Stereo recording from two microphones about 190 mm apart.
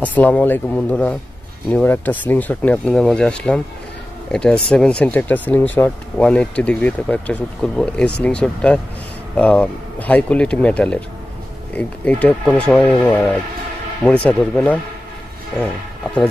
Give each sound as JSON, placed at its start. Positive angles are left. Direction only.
{"t": 0.0, "sound": "speech", "side_deg": 10}